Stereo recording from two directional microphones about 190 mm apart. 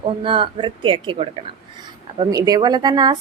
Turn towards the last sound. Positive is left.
turn(degrees=-20)  # may be behind; listen again after turning